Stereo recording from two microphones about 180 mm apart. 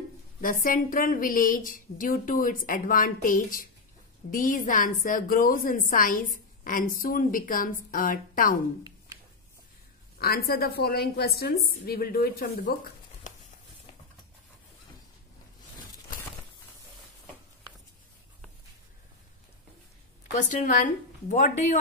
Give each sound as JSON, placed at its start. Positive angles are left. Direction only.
{"t": 0.4, "sound": "a woman's voice", "side_deg": 50}
{"t": 10.1, "sound": "a woman's voice", "side_deg": 55}
{"t": 20.3, "sound": "a woman's voice", "side_deg": 45}